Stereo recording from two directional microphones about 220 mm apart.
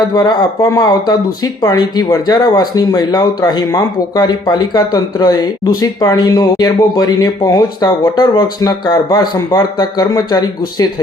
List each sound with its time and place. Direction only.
0.1 s speech: 20° left (ahead or behind)